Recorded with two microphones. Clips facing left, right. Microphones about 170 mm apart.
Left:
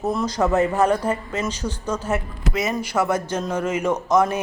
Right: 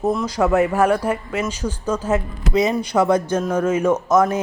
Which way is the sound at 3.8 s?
10° right (ahead or behind).